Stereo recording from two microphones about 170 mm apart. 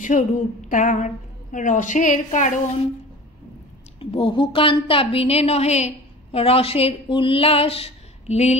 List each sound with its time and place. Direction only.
0.0 s a woman's voice: 50° left (ahead or behind)
4.0 s a woman's voice: 30° left (ahead or behind)